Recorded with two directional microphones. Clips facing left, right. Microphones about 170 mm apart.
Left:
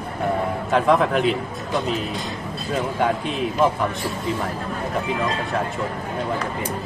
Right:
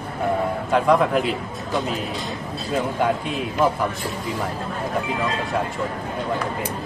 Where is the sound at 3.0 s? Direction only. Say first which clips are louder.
Left 1 dB; centre (ahead or behind).